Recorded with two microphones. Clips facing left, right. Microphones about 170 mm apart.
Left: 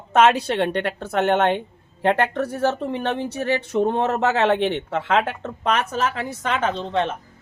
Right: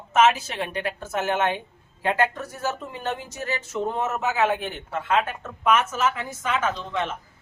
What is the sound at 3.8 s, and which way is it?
Speech, 70° left (ahead or behind).